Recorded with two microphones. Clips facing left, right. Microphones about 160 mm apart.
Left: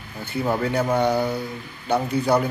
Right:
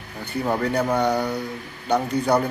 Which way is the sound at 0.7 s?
5° left (ahead or behind).